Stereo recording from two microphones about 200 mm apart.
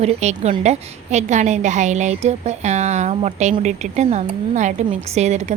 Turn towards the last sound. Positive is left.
turn(degrees=-35)  # may be behind; listen again after turning